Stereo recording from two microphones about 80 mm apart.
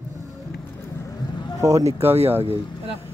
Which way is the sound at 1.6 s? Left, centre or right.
Right.